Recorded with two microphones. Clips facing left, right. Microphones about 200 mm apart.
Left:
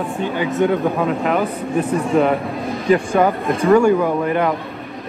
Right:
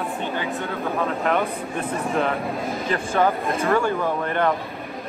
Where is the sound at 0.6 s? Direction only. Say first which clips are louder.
Left 11 dB; 15° left (ahead or behind).